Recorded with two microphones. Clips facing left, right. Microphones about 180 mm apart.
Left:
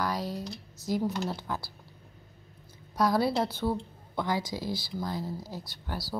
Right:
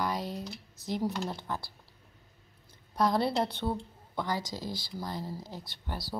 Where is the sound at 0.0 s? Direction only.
Centre (ahead or behind).